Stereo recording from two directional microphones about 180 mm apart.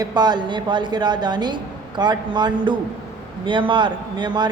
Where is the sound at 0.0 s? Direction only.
25° right (ahead or behind).